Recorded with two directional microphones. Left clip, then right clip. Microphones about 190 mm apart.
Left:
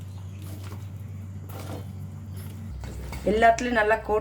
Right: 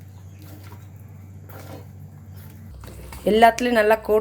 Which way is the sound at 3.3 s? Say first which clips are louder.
Right 4 dB; 50° right (ahead or behind).